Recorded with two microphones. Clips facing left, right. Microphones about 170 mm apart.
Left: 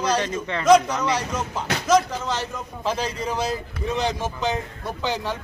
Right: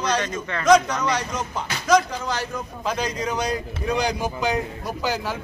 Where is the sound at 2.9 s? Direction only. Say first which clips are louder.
Even; 30° left (ahead or behind).